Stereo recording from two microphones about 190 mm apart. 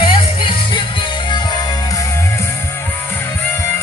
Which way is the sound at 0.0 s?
25° left (ahead or behind).